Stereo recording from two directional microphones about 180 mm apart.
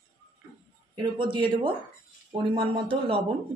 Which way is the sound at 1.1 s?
25° right (ahead or behind).